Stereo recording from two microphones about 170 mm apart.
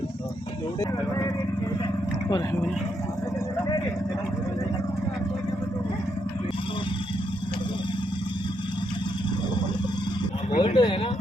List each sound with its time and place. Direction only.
10.6 s speech: 30° left (ahead or behind)